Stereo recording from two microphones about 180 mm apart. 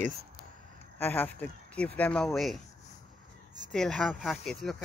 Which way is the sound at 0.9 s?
10° left (ahead or behind).